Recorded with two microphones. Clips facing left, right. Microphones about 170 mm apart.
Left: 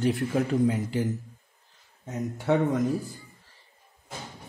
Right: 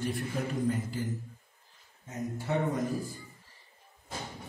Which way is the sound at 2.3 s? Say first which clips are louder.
Left 7 dB; 75° left (ahead or behind).